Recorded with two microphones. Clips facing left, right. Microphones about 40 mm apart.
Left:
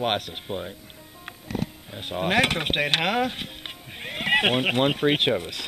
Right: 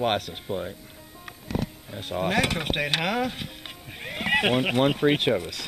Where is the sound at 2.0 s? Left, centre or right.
Left.